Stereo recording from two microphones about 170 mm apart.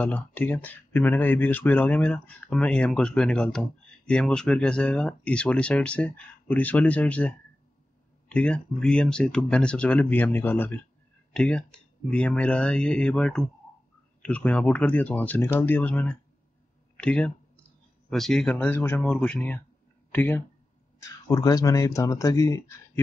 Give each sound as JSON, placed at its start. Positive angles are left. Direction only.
{"t": 0.0, "sound": "speech", "side_deg": 10}